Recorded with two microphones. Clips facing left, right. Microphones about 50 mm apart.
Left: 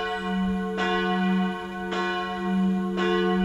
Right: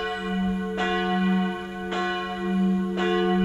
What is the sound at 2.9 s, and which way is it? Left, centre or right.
Church bell, centre.